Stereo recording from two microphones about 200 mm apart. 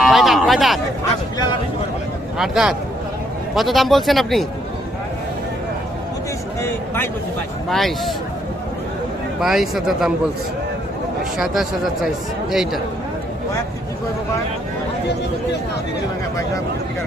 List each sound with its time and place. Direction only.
0.0 s a sound: centre (ahead or behind)
2.4 s speech: 5° right (ahead or behind)
6.6 s a man's voice: 10° left (ahead or behind)
9.4 s speech: centre (ahead or behind)
11.3 s speech: centre (ahead or behind)